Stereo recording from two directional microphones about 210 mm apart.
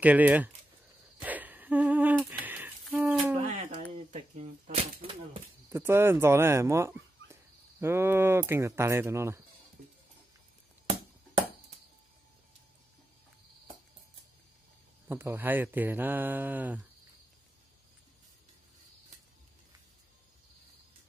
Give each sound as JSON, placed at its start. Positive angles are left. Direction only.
{"t": 0.0, "sound": "speech", "side_deg": -5}
{"t": 1.2, "sound": "a sound", "side_deg": -10}
{"t": 3.4, "sound": "a sound", "side_deg": -30}
{"t": 4.1, "sound": "speech", "side_deg": -35}
{"t": 5.7, "sound": "speech", "side_deg": -10}
{"t": 15.0, "sound": "speech", "side_deg": -10}